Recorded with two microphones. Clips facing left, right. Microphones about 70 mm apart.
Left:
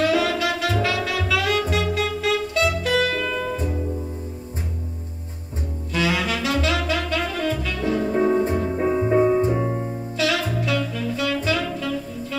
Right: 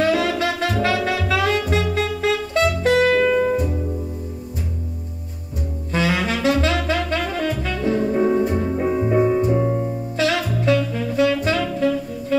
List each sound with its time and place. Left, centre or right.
0.0 s saxophone: right
0.8 s music: right
5.9 s saxophone: right
8.8 s music: centre
9.5 s music: centre
10.1 s saxophone: right